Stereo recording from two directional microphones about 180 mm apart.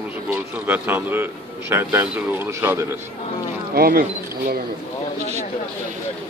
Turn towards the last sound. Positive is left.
turn(degrees=-55)  # may be behind; listen again after turning